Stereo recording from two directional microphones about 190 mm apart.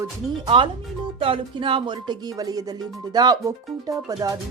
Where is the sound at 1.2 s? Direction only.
30° right (ahead or behind).